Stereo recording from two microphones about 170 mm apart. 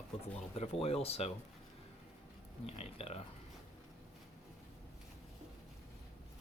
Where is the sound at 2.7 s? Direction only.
35° left (ahead or behind).